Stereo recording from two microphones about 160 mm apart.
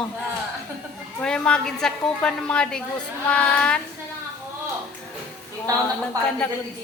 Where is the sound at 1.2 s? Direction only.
5° left (ahead or behind).